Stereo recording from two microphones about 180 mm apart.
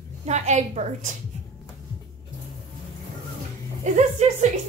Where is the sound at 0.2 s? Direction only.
40° right (ahead or behind).